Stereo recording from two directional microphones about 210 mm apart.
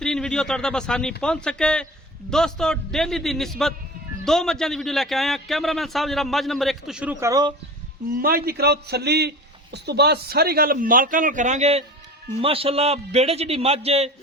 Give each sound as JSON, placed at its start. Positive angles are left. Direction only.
{"t": 0.0, "sound": "a man's voice", "side_deg": 5}
{"t": 8.1, "sound": "a sound", "side_deg": -45}
{"t": 9.7, "sound": "a man's voice", "side_deg": -50}